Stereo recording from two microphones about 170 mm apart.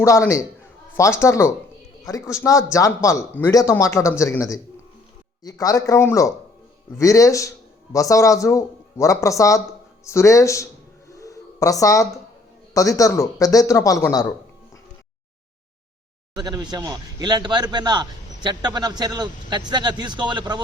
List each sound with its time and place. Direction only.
0.0 s speech: 15° left (ahead or behind)
11.1 s a sound: 20° left (ahead or behind)
12.7 s speech: 20° left (ahead or behind)
16.3 s a man's voice: 25° right (ahead or behind)